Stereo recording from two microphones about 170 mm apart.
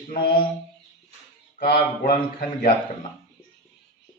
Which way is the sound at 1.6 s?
60° left (ahead or behind).